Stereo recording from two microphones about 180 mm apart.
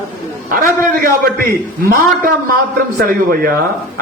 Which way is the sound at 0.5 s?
50° right (ahead or behind).